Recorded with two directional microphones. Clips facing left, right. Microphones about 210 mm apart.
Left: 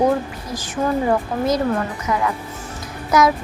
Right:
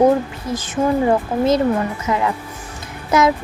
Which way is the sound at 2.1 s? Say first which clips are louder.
Right 2 dB; 25° right (ahead or behind).